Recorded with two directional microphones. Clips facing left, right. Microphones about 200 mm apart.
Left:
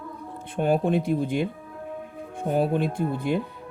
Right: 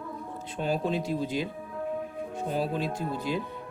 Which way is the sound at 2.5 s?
55° left (ahead or behind).